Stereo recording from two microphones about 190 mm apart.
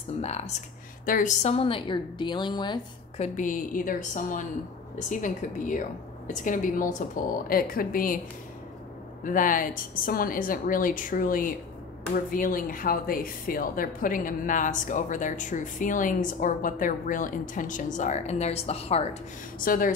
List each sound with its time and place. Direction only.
0.2 s a woman's voice: 35° left (ahead or behind)
3.2 s a woman's voice: 45° left (ahead or behind)
9.2 s a woman's voice: 45° left (ahead or behind)
19.6 s a woman's voice: 45° left (ahead or behind)